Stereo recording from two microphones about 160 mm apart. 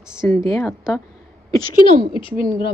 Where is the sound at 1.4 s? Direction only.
25° left (ahead or behind).